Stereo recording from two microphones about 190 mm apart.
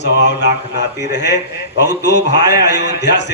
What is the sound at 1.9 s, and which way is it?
A man's voice, 65° left (ahead or behind).